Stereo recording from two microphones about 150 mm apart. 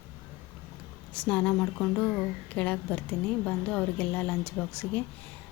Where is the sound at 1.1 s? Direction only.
5° left (ahead or behind).